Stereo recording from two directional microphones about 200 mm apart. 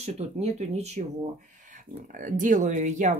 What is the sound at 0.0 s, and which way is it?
Speech, 35° right (ahead or behind).